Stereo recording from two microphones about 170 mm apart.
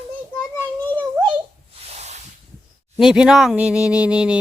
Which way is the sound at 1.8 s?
40° right (ahead or behind).